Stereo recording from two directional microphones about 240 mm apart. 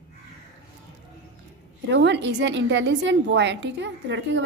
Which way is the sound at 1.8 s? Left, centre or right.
Right.